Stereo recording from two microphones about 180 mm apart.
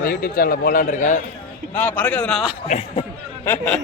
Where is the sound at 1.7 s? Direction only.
10° left (ahead or behind).